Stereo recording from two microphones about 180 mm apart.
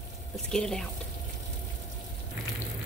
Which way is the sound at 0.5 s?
5° left (ahead or behind).